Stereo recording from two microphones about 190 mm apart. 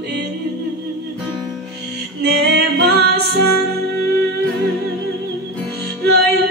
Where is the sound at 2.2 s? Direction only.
60° right (ahead or behind).